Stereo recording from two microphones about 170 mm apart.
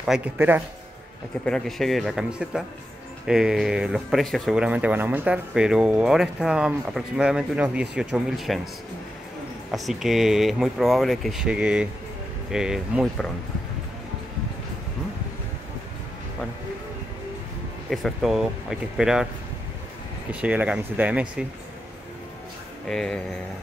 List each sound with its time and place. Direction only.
0.0 s speech: 5° right (ahead or behind)
1.4 s speech: 5° left (ahead or behind)
9.7 s speech: centre (ahead or behind)
17.8 s speech: centre (ahead or behind)
20.2 s speech: 10° right (ahead or behind)
22.8 s speech: 5° left (ahead or behind)